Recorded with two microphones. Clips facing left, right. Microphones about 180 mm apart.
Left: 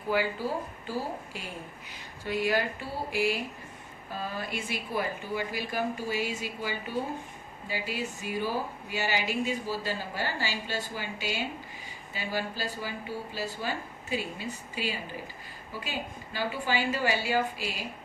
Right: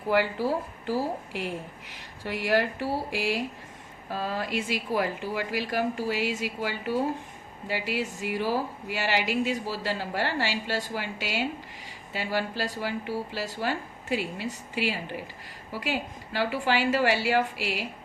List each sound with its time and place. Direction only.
0.1 s a woman's voice: 75° right (ahead or behind)